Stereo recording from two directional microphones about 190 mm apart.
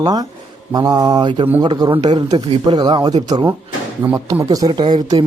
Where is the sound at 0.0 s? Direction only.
20° right (ahead or behind).